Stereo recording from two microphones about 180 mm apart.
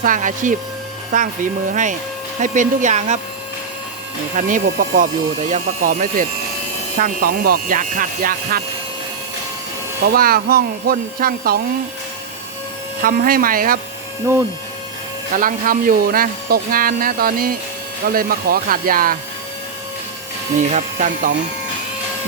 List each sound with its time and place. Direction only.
0.0 s speech: 45° right (ahead or behind)
4.4 s speech: 45° right (ahead or behind)
10.1 s speech: 55° right (ahead or behind)
13.0 s speech: 55° right (ahead or behind)
14.3 s speech: 15° right (ahead or behind)
15.4 s speech: 50° right (ahead or behind)
20.7 s speech: 45° right (ahead or behind)